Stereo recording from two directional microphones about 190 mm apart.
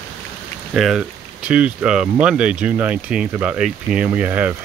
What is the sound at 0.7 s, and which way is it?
Speech, 5° right (ahead or behind).